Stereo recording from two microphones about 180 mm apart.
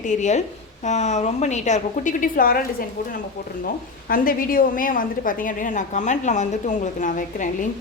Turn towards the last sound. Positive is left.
turn(degrees=45)  # may be behind; listen again after turning